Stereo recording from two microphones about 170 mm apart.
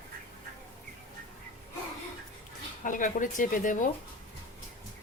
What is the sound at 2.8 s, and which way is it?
Speech, 50° left (ahead or behind).